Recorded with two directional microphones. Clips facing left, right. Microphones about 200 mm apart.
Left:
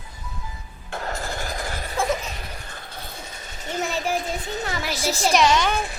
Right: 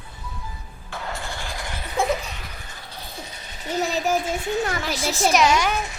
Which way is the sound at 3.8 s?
40° right (ahead or behind).